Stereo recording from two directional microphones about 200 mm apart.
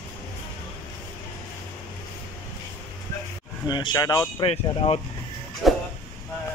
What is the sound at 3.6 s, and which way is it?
Speech, 20° left (ahead or behind).